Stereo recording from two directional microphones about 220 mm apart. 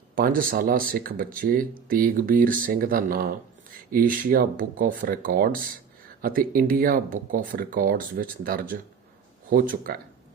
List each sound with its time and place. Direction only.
0.2 s speech: 40° right (ahead or behind)